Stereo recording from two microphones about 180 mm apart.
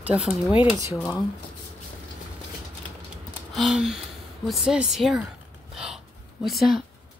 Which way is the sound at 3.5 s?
Centre (ahead or behind).